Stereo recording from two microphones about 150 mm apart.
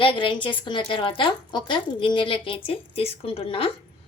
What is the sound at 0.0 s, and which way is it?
A woman's voice, 35° left (ahead or behind).